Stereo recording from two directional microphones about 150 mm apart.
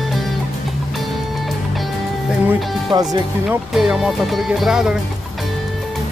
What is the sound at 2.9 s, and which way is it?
Speech, 25° right (ahead or behind).